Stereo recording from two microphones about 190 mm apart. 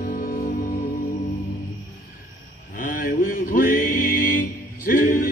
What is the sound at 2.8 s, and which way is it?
Music, 50° left (ahead or behind).